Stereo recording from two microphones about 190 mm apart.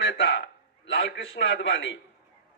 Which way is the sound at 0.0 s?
65° left (ahead or behind).